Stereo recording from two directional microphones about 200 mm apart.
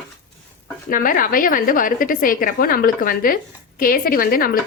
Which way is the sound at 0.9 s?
45° left (ahead or behind).